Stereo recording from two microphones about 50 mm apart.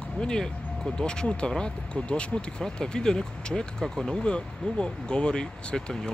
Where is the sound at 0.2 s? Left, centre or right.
Centre.